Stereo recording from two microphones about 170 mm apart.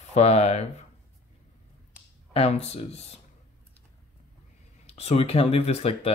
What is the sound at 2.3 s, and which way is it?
Speech, 35° left (ahead or behind).